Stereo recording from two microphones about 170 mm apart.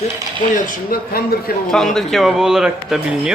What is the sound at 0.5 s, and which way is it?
Speech, 55° left (ahead or behind).